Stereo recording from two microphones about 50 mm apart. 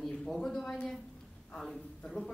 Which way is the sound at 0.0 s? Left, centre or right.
Centre.